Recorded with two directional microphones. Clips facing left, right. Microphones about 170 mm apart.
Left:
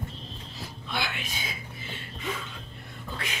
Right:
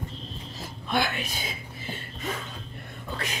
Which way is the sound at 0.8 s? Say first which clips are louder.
Right 7 dB; 45° right (ahead or behind).